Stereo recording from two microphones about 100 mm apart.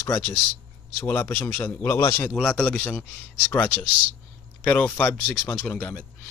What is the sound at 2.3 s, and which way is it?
A man's voice, 10° left (ahead or behind).